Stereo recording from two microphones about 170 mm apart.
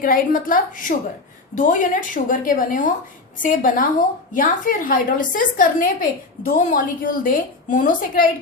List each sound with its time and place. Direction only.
0.0 s a woman's voice: 55° left (ahead or behind)